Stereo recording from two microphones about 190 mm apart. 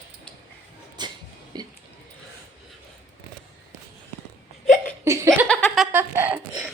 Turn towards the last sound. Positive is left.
turn(degrees=-10)  # may be behind; listen again after turning